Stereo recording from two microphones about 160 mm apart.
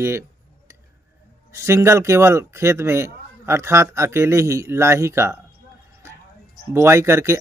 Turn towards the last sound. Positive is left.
turn(degrees=-15)  # may be behind; listen again after turning